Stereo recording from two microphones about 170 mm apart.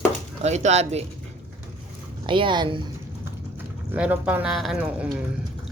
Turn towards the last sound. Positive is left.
turn(degrees=0)  # may be behind; listen again after turning